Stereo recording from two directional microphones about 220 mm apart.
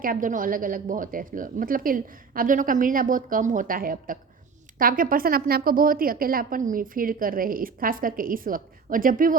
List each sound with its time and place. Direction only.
0.0 s a woman's voice: 40° right (ahead or behind)